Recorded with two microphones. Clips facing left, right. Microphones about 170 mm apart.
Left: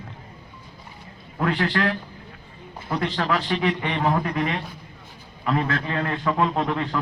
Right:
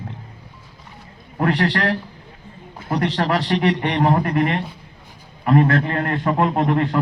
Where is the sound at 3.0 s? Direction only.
75° right (ahead or behind).